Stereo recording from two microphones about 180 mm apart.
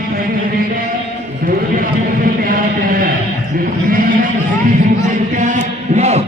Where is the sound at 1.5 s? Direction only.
50° right (ahead or behind).